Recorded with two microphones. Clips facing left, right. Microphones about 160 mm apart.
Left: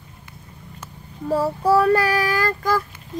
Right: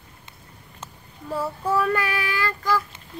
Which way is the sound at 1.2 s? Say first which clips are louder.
Left 7 dB; 40° left (ahead or behind).